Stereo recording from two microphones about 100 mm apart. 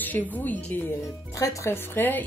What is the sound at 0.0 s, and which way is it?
A woman's voice, 15° left (ahead or behind).